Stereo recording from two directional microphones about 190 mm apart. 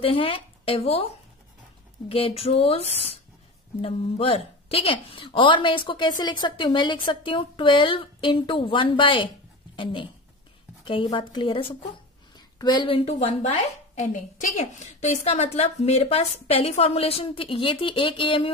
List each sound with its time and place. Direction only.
0.0 s speech: 30° left (ahead or behind)
2.0 s a woman's voice: 30° left (ahead or behind)
10.9 s a woman's voice: 25° left (ahead or behind)